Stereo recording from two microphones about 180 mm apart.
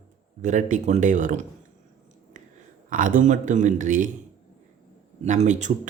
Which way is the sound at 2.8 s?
45° right (ahead or behind).